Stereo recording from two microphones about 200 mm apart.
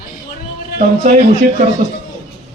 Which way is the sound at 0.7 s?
35° right (ahead or behind).